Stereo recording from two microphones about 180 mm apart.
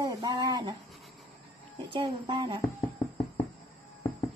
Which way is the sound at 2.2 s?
25° right (ahead or behind).